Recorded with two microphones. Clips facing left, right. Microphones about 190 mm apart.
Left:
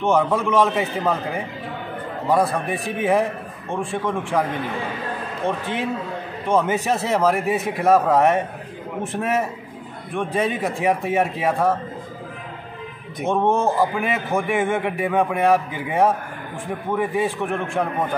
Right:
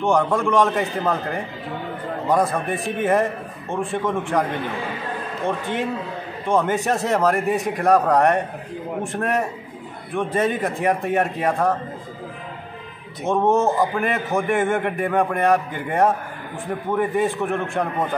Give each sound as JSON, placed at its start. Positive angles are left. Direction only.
{"t": 0.0, "sound": "a man's voice", "side_deg": 0}
{"t": 2.5, "sound": "a man's voice", "side_deg": 0}
{"t": 13.3, "sound": "a man's voice", "side_deg": 0}